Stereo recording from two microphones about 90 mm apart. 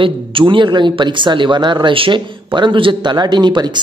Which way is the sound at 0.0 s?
75° right (ahead or behind).